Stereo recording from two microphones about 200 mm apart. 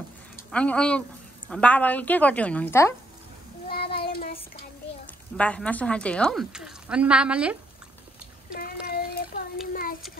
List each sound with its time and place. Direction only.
0.5 s a woman's voice: 5° left (ahead or behind)
3.6 s child singing: 50° left (ahead or behind)
5.4 s a woman's voice: 5° left (ahead or behind)
8.5 s a sound: 45° left (ahead or behind)
9.7 s child singing: 45° left (ahead or behind)